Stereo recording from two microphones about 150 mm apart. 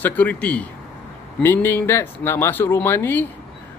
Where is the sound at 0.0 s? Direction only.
10° left (ahead or behind).